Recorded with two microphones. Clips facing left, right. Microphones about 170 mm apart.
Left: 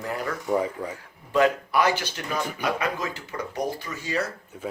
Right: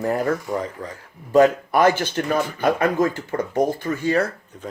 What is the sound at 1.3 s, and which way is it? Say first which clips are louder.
Speech: right 6 dB; 45° right (ahead or behind).